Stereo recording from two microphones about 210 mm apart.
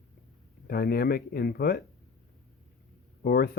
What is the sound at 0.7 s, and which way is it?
Speech, 45° left (ahead or behind).